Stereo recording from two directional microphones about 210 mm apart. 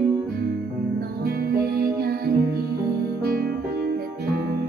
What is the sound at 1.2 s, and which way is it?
Music, 45° right (ahead or behind).